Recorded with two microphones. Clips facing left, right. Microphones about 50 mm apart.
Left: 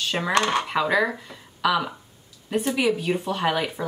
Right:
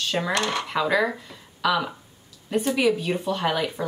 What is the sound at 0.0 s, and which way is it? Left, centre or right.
Dishes, centre.